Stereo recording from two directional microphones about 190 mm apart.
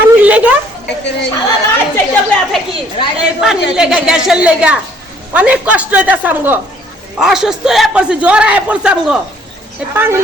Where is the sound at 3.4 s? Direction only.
5° right (ahead or behind).